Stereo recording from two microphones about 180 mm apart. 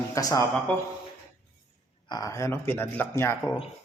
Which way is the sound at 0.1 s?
20° left (ahead or behind).